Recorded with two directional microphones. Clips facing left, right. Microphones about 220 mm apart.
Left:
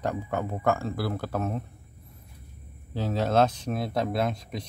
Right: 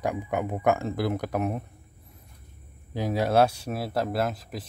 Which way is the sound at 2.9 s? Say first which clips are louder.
Right 1 dB; 10° right (ahead or behind).